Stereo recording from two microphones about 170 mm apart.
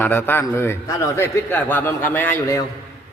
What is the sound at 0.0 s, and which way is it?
A man's voice, 10° left (ahead or behind).